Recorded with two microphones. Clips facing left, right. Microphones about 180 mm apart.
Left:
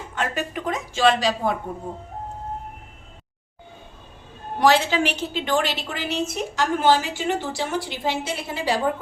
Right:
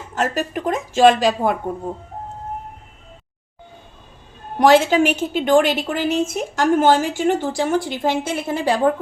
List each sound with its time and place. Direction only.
0.1 s a woman's voice: 40° right (ahead or behind)
4.6 s a woman's voice: 50° right (ahead or behind)